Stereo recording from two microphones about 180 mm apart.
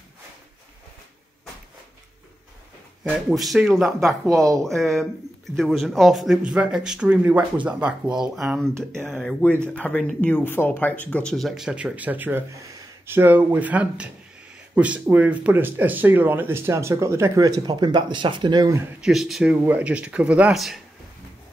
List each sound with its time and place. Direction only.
3.0 s speech: 5° right (ahead or behind)
4.3 s speech: 20° right (ahead or behind)
4.6 s speech: centre (ahead or behind); by 18.9 s 20° right (ahead or behind)
18.9 s speech: centre (ahead or behind)